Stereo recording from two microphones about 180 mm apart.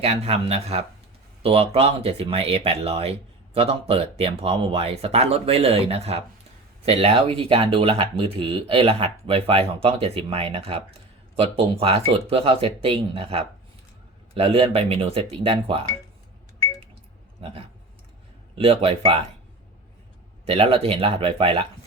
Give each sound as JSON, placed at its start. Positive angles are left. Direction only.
{"t": 0.0, "sound": "speech", "side_deg": -35}
{"t": 18.5, "sound": "speech", "side_deg": -30}
{"t": 20.5, "sound": "speech", "side_deg": -30}